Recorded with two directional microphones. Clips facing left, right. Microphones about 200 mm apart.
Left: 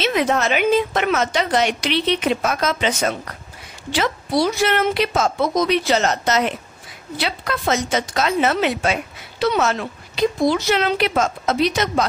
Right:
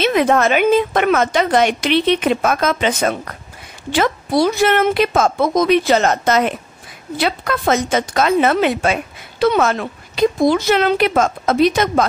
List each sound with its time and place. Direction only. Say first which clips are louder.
0.0 s a woman's voice: right 5 dB; 55° right (ahead or behind)